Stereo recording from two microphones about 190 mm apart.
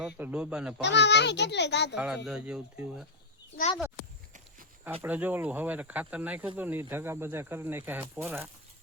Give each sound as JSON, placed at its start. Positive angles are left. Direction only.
{"t": 0.0, "sound": "speech", "side_deg": -5}
{"t": 0.8, "sound": "a child's voice", "side_deg": 65}
{"t": 2.0, "sound": "speech", "side_deg": -5}
{"t": 5.0, "sound": "speech", "side_deg": -10}